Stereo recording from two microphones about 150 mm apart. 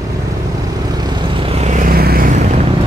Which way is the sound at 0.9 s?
30° right (ahead or behind).